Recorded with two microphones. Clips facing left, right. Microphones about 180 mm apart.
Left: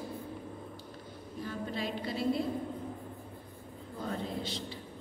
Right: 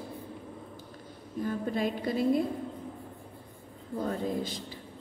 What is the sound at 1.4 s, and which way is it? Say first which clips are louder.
Speech: right 6 dB; 50° right (ahead or behind).